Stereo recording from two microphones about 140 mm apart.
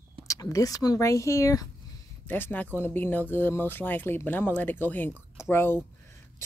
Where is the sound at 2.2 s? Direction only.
15° left (ahead or behind).